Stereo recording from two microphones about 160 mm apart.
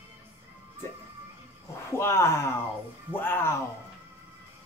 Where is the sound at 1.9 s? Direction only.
15° left (ahead or behind).